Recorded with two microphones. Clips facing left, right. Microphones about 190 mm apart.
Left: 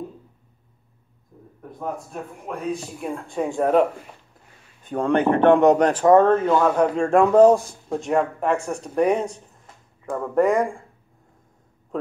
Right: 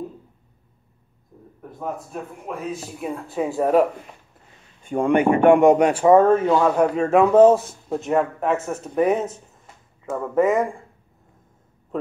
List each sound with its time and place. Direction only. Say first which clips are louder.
1.6 s speech: even; centre (ahead or behind)
4.8 s speech: right 2 dB; 10° right (ahead or behind)
11.9 s speech: right 1 dB; centre (ahead or behind)